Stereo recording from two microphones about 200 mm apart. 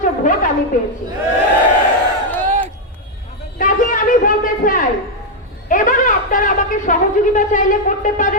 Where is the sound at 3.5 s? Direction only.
40° left (ahead or behind).